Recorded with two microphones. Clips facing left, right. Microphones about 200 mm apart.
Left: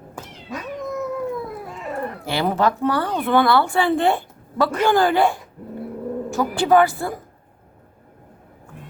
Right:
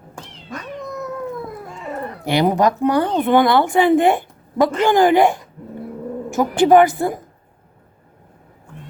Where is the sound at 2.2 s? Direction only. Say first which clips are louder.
Right 5 dB; 20° right (ahead or behind).